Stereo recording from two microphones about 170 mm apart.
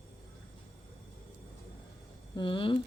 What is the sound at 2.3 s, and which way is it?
Speech, 30° left (ahead or behind).